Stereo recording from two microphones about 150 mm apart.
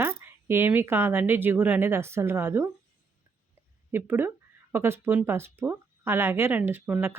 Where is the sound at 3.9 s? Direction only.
15° right (ahead or behind).